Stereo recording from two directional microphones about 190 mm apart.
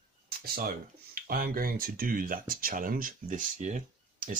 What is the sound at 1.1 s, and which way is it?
Speech, 50° right (ahead or behind).